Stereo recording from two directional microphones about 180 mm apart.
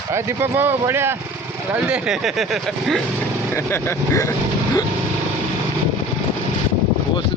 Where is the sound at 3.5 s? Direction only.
15° left (ahead or behind).